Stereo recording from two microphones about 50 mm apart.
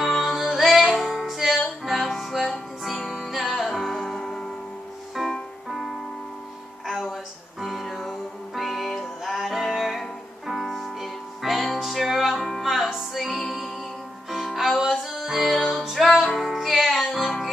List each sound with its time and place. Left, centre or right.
0.0 s music: centre
6.9 s music: centre